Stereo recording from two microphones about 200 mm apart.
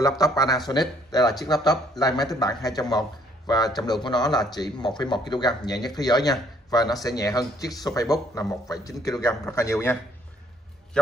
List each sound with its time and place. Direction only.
0.2 s a man's voice: 15° left (ahead or behind)